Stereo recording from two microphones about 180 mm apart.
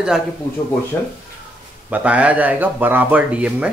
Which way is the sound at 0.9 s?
10° left (ahead or behind).